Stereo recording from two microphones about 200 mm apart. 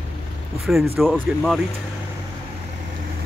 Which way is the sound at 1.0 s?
Centre (ahead or behind).